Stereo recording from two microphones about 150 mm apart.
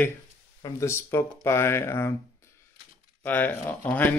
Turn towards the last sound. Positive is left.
turn(degrees=10)  # may be behind; listen again after turning